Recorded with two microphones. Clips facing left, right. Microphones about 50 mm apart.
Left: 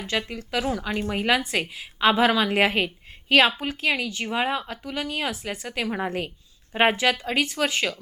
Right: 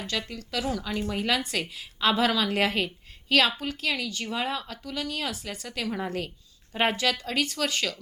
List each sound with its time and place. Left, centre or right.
0.1 s a woman's voice: left